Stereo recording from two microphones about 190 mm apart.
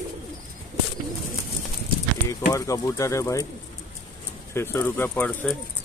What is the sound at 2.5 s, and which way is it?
Speech, 15° left (ahead or behind).